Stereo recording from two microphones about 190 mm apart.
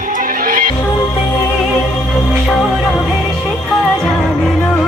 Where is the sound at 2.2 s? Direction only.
Centre (ahead or behind).